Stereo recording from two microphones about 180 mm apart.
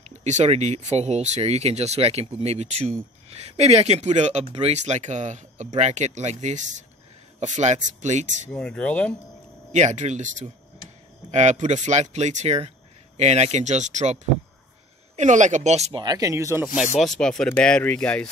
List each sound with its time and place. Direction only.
0.1 s speech: 40° right (ahead or behind)
8.5 s speech: 5° left (ahead or behind)
9.7 s speech: 40° right (ahead or behind)
15.1 s speech: 45° right (ahead or behind)
16.0 s speech: 20° right (ahead or behind)
17.0 s speech: 5° left (ahead or behind)